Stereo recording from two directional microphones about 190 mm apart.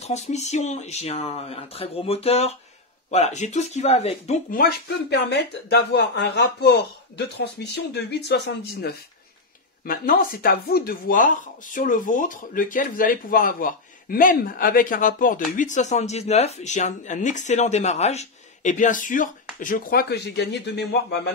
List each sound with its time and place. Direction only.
0.0 s speech: 35° left (ahead or behind)
4.6 s speech: 60° left (ahead or behind)
9.8 s speech: 50° left (ahead or behind)